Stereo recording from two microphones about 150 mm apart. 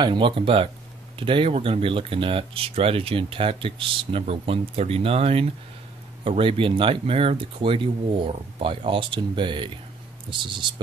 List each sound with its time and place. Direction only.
0.0 s speech: 35° right (ahead or behind)